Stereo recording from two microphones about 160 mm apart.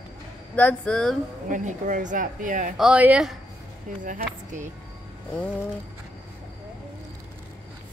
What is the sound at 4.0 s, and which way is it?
Speech, 55° right (ahead or behind).